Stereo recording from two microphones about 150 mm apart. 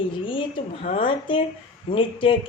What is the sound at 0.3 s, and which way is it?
A woman's voice, 35° left (ahead or behind).